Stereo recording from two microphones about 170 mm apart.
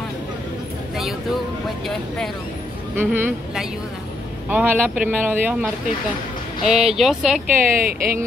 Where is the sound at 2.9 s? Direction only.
10° right (ahead or behind).